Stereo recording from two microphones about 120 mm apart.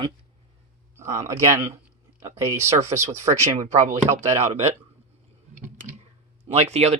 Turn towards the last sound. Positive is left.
turn(degrees=-65)  # may be behind; listen again after turning